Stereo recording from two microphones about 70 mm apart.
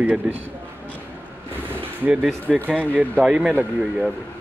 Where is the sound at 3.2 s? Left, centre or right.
Centre.